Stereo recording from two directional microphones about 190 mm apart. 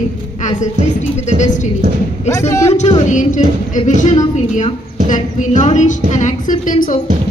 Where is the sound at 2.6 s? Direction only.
35° left (ahead or behind).